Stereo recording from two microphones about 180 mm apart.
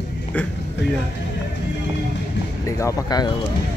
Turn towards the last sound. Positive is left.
turn(degrees=20)  # may be behind; listen again after turning